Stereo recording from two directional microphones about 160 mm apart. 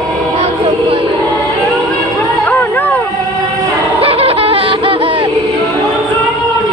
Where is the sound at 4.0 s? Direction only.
35° right (ahead or behind).